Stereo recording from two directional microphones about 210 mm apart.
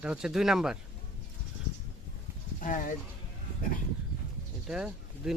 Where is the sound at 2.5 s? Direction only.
40° left (ahead or behind).